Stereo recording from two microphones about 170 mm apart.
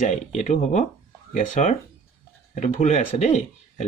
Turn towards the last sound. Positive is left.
turn(degrees=45)  # may be behind; listen again after turning